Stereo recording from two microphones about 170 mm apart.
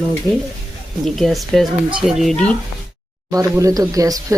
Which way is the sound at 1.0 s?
Centre (ahead or behind).